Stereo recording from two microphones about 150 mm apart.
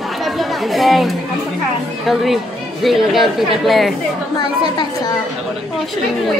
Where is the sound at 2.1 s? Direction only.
Centre (ahead or behind).